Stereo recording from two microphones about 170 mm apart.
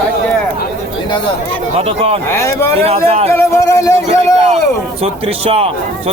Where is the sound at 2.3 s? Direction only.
15° left (ahead or behind).